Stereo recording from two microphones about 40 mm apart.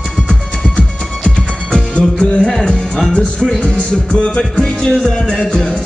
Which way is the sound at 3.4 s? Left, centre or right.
Centre.